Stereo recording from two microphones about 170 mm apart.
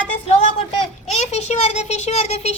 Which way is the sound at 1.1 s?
40° left (ahead or behind).